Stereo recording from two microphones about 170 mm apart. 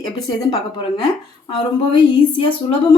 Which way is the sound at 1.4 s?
30° left (ahead or behind).